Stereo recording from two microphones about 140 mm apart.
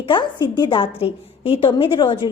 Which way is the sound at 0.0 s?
35° left (ahead or behind).